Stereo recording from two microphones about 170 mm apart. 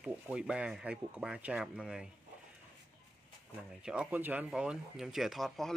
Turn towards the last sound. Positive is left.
turn(degrees=0)  # may be behind; listen again after turning